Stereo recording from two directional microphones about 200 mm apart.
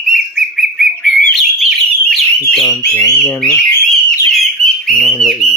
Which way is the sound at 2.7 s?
10° left (ahead or behind).